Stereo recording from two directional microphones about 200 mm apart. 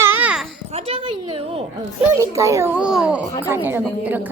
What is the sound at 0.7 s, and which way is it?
Speech, 30° right (ahead or behind).